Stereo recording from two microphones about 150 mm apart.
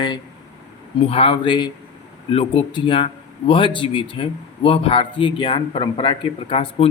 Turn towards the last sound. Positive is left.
turn(degrees=40)  # may be behind; listen again after turning